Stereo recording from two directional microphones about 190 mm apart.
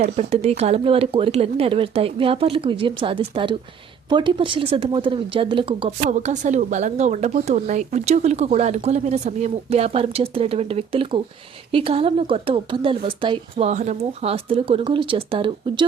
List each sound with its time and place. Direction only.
0.0 s speech: 35° right (ahead or behind)
6.1 s speech: 40° right (ahead or behind)
13.7 s speech: 40° right (ahead or behind)